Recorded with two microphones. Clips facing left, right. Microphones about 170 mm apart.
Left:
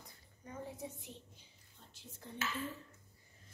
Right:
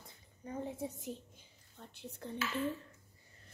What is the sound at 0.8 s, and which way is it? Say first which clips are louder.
Speech: right 6 dB; 45° right (ahead or behind).